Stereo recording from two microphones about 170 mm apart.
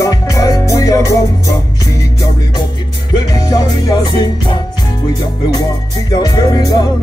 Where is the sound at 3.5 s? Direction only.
20° left (ahead or behind).